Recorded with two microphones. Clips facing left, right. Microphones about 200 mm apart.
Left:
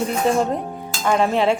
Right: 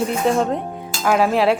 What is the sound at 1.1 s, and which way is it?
Speech, 5° right (ahead or behind).